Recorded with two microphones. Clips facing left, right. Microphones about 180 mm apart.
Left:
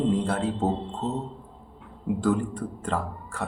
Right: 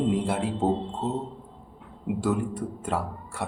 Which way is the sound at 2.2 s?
5° right (ahead or behind).